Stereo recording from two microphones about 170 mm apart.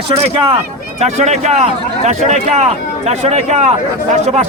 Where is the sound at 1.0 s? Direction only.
40° right (ahead or behind).